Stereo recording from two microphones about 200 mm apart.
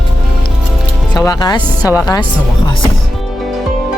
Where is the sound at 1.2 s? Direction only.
20° left (ahead or behind).